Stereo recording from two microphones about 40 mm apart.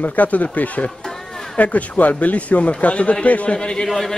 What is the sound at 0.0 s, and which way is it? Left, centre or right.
Speech, left.